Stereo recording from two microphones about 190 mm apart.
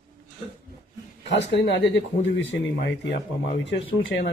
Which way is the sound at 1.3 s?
65° left (ahead or behind).